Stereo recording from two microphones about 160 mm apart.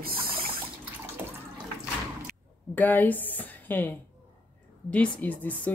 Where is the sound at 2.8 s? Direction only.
10° left (ahead or behind).